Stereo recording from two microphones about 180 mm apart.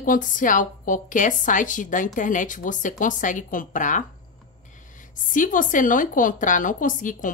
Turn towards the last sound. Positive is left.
turn(degrees=45)  # may be behind; listen again after turning